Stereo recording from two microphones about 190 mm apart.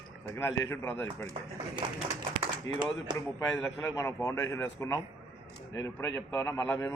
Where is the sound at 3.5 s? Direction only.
15° left (ahead or behind).